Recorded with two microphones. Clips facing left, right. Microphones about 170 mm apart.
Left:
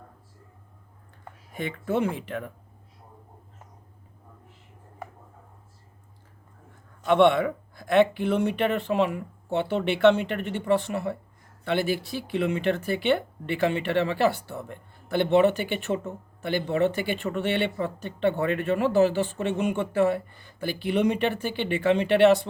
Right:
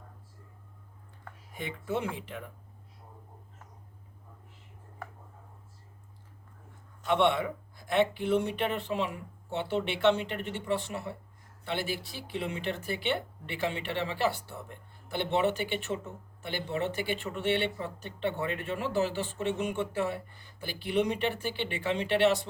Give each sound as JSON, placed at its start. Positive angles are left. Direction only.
{"t": 1.5, "sound": "speech", "side_deg": 65}
{"t": 7.0, "sound": "speech", "side_deg": 60}